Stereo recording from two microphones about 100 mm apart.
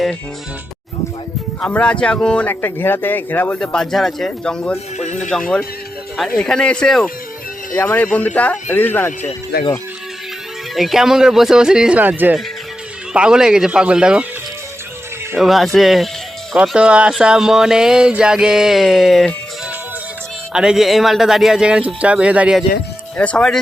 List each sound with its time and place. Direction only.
1.7 s speech: 10° left (ahead or behind)
3.6 s speech: 5° left (ahead or behind)
7.7 s speech: 20° left (ahead or behind)
10.8 s speech: centre (ahead or behind)
15.4 s speech: centre (ahead or behind)
20.5 s speech: 5° right (ahead or behind)
23.1 s speech: 10° left (ahead or behind)